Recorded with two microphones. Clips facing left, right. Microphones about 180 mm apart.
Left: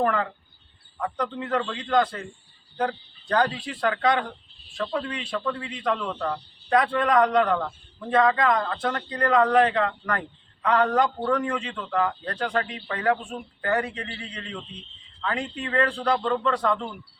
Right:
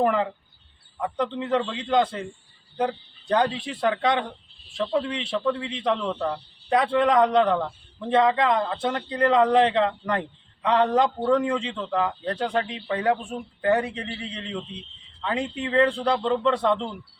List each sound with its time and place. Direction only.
0.0 s a man's voice: 20° right (ahead or behind)